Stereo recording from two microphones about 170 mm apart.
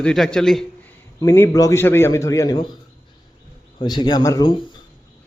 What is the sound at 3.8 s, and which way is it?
Speech, 25° left (ahead or behind).